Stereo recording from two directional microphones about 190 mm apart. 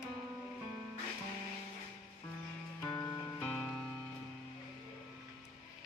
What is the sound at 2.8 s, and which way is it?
Music, 10° left (ahead or behind).